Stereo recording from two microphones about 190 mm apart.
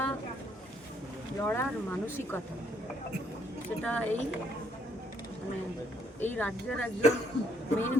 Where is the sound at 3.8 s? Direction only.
5° left (ahead or behind).